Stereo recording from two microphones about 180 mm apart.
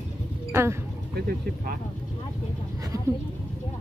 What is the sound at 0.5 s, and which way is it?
Speech, 15° right (ahead or behind).